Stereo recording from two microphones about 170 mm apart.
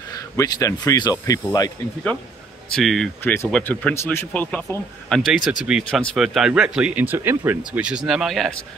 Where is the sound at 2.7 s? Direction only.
Centre (ahead or behind).